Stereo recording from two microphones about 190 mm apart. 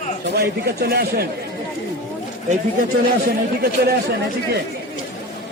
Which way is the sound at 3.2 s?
55° right (ahead or behind).